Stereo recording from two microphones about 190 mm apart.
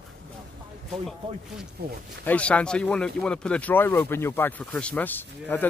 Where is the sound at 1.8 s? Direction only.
55° right (ahead or behind).